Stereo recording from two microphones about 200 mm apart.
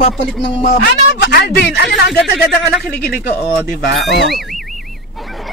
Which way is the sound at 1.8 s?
Centre (ahead or behind).